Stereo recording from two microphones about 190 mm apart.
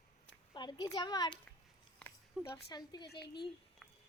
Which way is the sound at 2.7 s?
20° left (ahead or behind).